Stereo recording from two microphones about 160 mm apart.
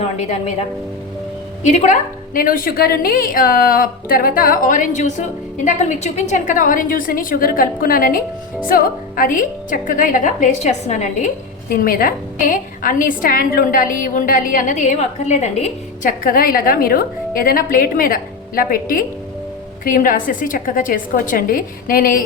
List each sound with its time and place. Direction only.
0.0 s a woman's voice: 45° left (ahead or behind)
1.6 s a woman's voice: 45° left (ahead or behind)
11.7 s a woman's voice: 60° left (ahead or behind); by 16.1 s 45° left (ahead or behind)
16.2 s a woman's voice: 65° left (ahead or behind)